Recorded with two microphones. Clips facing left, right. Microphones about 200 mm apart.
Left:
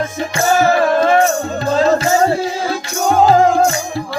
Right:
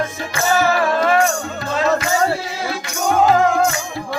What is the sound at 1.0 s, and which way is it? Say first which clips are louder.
Music: left 3 dB; 35° left (ahead or behind).